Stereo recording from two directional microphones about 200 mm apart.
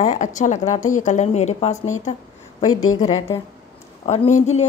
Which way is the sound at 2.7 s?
90° left.